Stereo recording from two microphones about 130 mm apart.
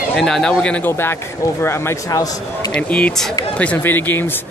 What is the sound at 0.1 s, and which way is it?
Speech, 5° left (ahead or behind).